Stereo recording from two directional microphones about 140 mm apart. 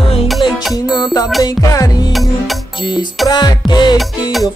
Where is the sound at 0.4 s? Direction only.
40° left (ahead or behind).